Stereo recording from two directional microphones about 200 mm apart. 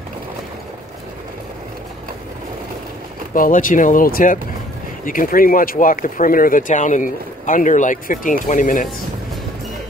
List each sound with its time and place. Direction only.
3.3 s speech: 45° left (ahead or behind)